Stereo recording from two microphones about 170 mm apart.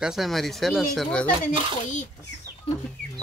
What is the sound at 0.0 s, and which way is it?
Speech, centre (ahead or behind).